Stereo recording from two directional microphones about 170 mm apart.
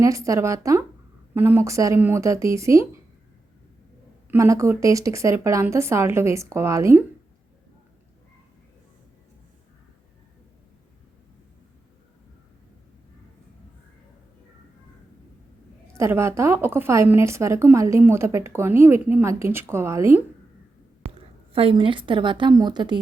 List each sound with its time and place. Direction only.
0.0 s a woman's voice: 20° right (ahead or behind)
4.3 s a woman's voice: 15° right (ahead or behind)
15.9 s a woman's voice: 15° right (ahead or behind)
21.5 s a woman's voice: 30° right (ahead or behind)